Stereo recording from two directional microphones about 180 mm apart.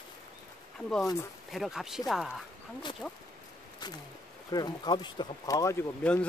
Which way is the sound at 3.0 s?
5° left (ahead or behind).